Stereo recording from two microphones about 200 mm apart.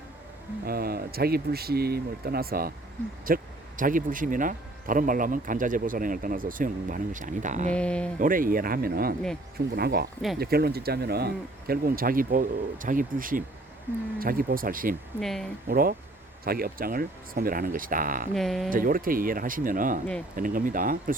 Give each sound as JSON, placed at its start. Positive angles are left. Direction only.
{"t": 0.6, "sound": "speech", "side_deg": -50}
{"t": 7.7, "sound": "speech", "side_deg": 5}
{"t": 8.2, "sound": "speech", "side_deg": -45}
{"t": 15.2, "sound": "speech", "side_deg": 0}
{"t": 15.7, "sound": "speech", "side_deg": -50}
{"t": 18.3, "sound": "speech", "side_deg": 0}
{"t": 18.7, "sound": "speech", "side_deg": -45}